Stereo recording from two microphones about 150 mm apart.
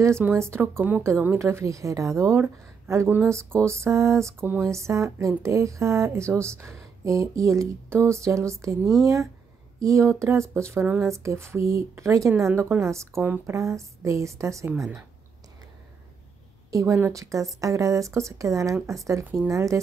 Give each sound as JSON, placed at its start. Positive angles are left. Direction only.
{"t": 0.0, "sound": "a woman's voice", "side_deg": -15}
{"t": 16.7, "sound": "speech", "side_deg": -20}